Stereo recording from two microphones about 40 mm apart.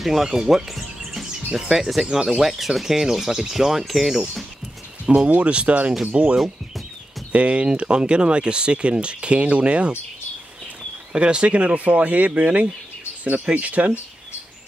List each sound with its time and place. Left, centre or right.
0.0 s speech: centre
0.7 s music: centre
1.5 s speech: centre
5.2 s speech: right
7.3 s speech: right
11.1 s speech: right